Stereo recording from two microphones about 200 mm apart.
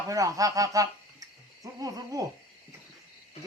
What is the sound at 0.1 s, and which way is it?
Speech, 15° right (ahead or behind).